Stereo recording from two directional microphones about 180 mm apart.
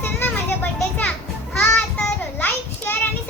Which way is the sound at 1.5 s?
10° left (ahead or behind).